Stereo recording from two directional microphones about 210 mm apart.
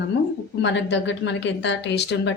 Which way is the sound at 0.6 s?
60° left (ahead or behind).